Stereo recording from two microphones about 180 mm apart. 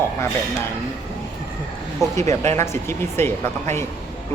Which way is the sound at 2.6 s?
15° left (ahead or behind).